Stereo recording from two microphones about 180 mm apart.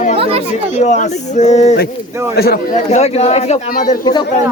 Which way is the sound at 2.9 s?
35° left (ahead or behind).